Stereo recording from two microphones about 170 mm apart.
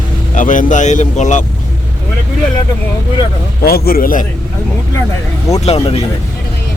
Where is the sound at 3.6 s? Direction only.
60° left (ahead or behind).